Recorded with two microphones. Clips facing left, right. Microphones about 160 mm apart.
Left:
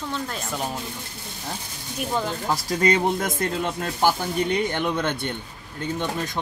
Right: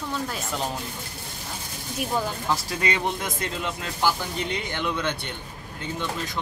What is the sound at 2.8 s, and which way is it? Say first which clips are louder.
Speech: left 6 dB; 45° left (ahead or behind).